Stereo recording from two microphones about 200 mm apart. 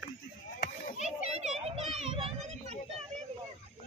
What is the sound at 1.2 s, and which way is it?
A child's voice, 30° right (ahead or behind).